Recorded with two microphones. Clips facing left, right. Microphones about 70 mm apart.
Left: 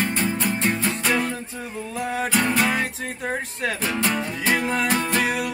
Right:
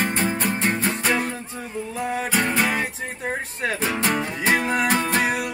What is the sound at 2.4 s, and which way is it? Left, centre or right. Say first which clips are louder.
Music: left 1 dB; centre.